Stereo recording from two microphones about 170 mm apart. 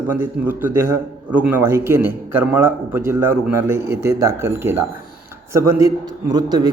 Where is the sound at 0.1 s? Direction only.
10° right (ahead or behind).